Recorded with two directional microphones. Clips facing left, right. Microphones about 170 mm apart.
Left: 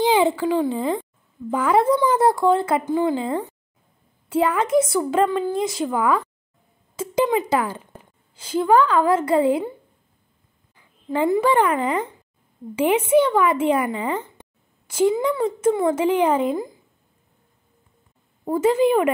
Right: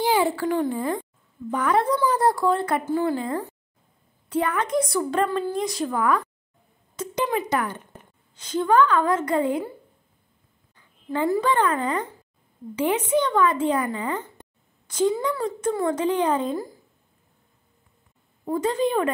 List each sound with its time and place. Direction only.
0.0 s a child's voice: 20° left (ahead or behind)
11.1 s speech: 20° left (ahead or behind)
13.8 s speech: 20° left (ahead or behind)
16.1 s speech: 10° left (ahead or behind)
16.3 s speech: 20° left (ahead or behind)
18.4 s speech: 25° left (ahead or behind)
18.8 s speech: 10° left (ahead or behind)